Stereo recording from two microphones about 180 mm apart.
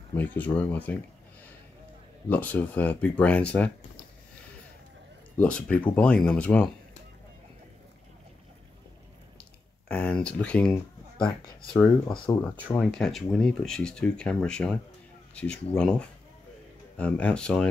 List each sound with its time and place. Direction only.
0.1 s speech: 10° left (ahead or behind)
2.2 s speech: 10° left (ahead or behind)
5.4 s speech: 10° left (ahead or behind)
9.4 s a sound: 5° left (ahead or behind)
12.3 s speech: 10° left (ahead or behind)